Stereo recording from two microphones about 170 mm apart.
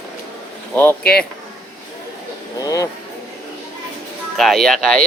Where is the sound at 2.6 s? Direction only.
20° left (ahead or behind).